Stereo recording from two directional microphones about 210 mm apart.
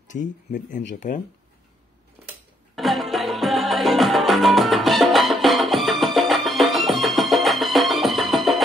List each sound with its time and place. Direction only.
0.1 s speech: 40° left (ahead or behind)
2.7 s music: centre (ahead or behind)